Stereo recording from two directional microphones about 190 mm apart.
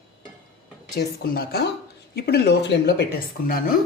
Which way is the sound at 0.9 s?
55° left (ahead or behind).